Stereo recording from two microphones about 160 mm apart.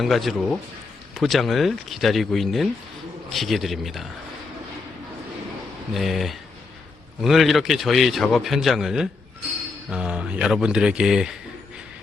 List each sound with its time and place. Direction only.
0.0 s a man's voice: centre (ahead or behind)
5.9 s a man's voice: centre (ahead or behind)